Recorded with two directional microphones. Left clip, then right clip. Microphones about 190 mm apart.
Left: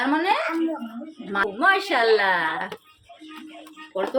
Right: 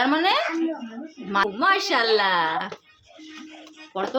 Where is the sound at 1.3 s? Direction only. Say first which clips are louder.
Even; 15° right (ahead or behind).